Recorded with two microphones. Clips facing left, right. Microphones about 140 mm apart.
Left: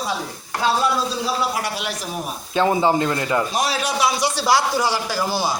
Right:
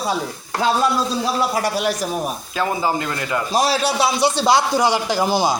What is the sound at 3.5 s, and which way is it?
A man's voice, 35° right (ahead or behind).